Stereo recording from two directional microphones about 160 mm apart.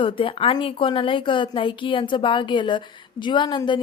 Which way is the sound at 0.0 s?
35° left (ahead or behind).